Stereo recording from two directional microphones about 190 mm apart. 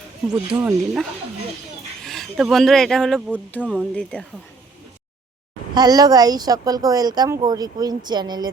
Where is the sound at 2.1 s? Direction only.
Centre (ahead or behind).